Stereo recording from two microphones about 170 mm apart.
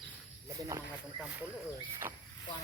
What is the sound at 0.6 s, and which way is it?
Speech, 20° right (ahead or behind).